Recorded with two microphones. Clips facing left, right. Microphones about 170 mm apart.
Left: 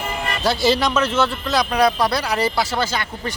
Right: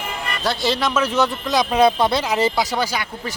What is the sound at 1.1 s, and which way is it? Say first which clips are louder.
Speech: right 1 dB; 15° right (ahead or behind).